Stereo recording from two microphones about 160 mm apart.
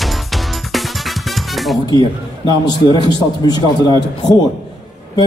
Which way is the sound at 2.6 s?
25° left (ahead or behind).